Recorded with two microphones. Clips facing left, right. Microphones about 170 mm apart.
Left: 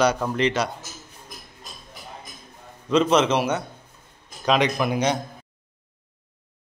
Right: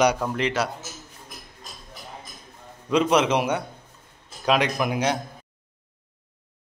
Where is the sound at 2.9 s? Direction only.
10° right (ahead or behind).